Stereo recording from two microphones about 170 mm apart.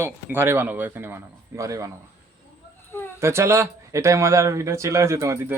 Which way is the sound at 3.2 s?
15° right (ahead or behind).